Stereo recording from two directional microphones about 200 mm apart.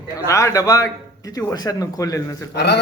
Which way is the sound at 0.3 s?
15° left (ahead or behind).